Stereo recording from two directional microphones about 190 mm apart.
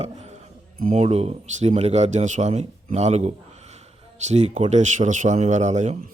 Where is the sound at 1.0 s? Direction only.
35° right (ahead or behind).